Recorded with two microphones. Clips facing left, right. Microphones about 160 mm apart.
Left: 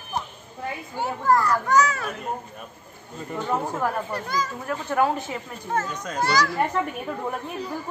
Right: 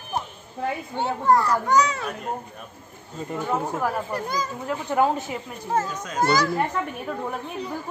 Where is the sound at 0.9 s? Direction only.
25° right (ahead or behind).